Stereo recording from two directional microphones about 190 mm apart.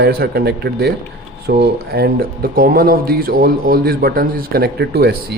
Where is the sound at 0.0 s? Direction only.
55° right (ahead or behind).